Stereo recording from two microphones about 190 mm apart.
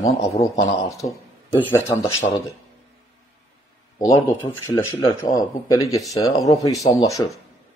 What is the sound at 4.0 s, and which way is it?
Speech, 15° left (ahead or behind).